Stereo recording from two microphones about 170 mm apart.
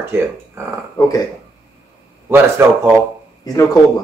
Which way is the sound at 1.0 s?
20° left (ahead or behind).